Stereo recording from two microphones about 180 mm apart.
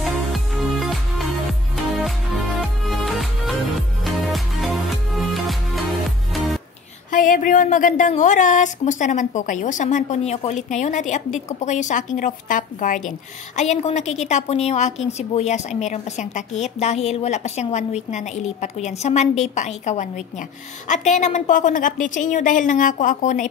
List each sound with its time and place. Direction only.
0.0 s music: centre (ahead or behind)
7.1 s a woman's voice: 50° left (ahead or behind)